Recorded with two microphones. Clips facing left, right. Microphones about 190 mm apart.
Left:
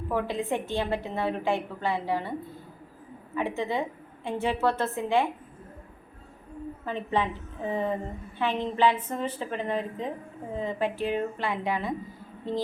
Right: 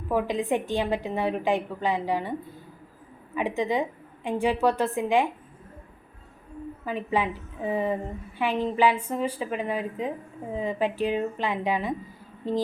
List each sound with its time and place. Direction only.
0.1 s a woman's voice: 15° right (ahead or behind)
3.3 s a woman's voice: 15° right (ahead or behind)
6.8 s a woman's voice: 10° right (ahead or behind)